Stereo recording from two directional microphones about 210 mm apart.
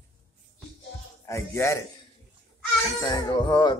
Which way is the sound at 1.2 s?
15° left (ahead or behind).